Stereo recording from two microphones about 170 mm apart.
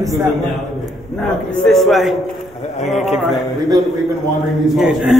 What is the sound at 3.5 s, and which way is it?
Speech, 25° right (ahead or behind).